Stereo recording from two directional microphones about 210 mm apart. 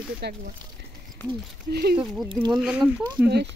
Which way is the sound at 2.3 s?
25° right (ahead or behind).